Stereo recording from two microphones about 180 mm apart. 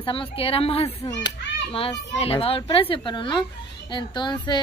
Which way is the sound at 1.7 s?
30° left (ahead or behind).